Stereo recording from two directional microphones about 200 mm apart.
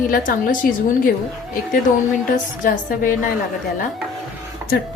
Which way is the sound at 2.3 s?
45° left (ahead or behind).